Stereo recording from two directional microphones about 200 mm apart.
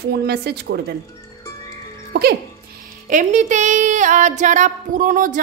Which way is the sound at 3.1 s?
40° right (ahead or behind).